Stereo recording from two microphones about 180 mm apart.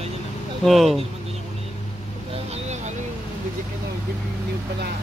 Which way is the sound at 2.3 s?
35° right (ahead or behind).